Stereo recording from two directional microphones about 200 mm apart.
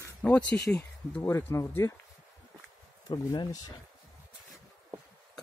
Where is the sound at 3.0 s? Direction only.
20° left (ahead or behind).